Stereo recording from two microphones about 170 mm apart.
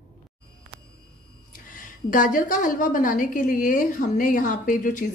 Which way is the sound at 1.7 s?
50° left (ahead or behind).